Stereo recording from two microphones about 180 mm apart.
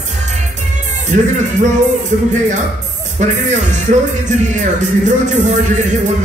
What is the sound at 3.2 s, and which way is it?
Speech, 40° right (ahead or behind).